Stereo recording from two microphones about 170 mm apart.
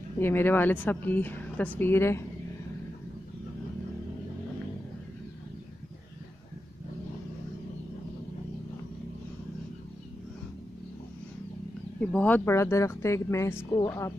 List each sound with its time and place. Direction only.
0.2 s a woman's voice: 15° left (ahead or behind)
12.0 s a woman's voice: 5° left (ahead or behind)